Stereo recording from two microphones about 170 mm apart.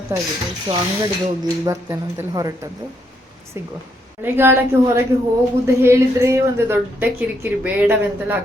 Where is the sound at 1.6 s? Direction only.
15° right (ahead or behind).